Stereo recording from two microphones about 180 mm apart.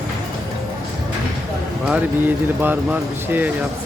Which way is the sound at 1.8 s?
10° right (ahead or behind).